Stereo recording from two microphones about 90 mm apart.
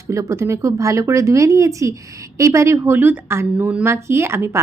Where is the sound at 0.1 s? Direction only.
35° right (ahead or behind).